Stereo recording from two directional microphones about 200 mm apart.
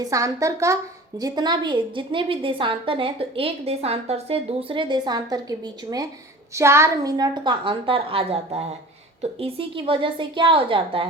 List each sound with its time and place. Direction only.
0.0 s a woman's voice: 15° right (ahead or behind)